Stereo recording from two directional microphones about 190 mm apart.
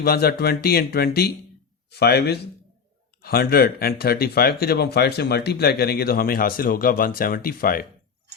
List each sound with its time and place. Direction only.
0.0 s speech: 55° left (ahead or behind)